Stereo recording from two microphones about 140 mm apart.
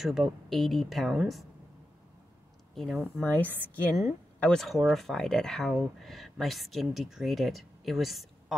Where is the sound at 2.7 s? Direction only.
Centre (ahead or behind).